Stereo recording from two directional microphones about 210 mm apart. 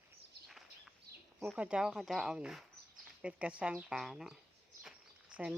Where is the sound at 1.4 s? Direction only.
5° right (ahead or behind).